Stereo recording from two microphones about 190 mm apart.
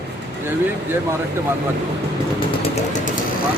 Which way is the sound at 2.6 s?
35° left (ahead or behind).